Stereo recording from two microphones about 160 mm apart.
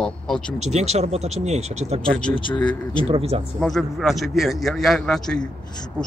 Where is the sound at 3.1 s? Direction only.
40° right (ahead or behind).